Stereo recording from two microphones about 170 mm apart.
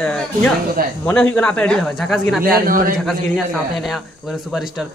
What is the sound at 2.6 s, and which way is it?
Speech, 55° right (ahead or behind).